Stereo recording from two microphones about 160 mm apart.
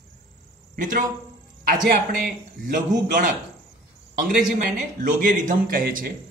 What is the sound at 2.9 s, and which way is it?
Speech, 55° right (ahead or behind).